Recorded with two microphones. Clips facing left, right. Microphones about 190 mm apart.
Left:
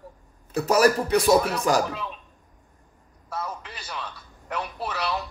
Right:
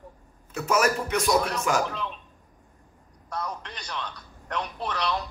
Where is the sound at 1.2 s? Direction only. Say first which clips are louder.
Left 3 dB; 5° left (ahead or behind).